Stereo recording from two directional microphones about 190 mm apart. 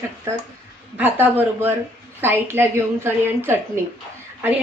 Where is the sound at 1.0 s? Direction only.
10° right (ahead or behind).